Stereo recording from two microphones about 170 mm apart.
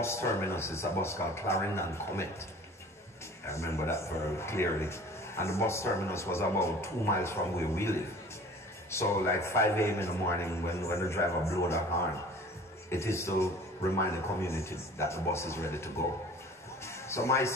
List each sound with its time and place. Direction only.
0.0 s speech: 15° left (ahead or behind)
3.4 s speech: 15° left (ahead or behind)
12.9 s speech: 15° left (ahead or behind)
16.8 s music: 15° left (ahead or behind)